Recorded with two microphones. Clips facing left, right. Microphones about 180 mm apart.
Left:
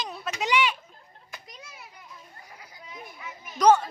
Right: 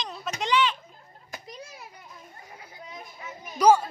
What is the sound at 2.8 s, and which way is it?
Children playing, 40° right (ahead or behind).